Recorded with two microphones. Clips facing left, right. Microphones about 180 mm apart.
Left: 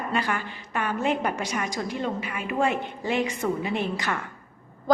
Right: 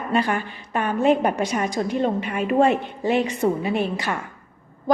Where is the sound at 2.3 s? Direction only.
35° right (ahead or behind).